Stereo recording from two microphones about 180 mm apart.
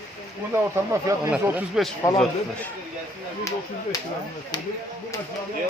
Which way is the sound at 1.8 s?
5° right (ahead or behind).